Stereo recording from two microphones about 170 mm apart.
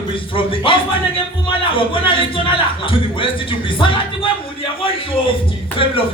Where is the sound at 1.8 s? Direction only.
30° left (ahead or behind).